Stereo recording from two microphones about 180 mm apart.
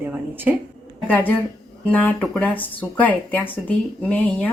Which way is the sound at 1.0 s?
10° left (ahead or behind).